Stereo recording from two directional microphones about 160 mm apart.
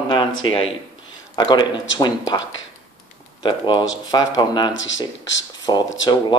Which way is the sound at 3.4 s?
30° left (ahead or behind).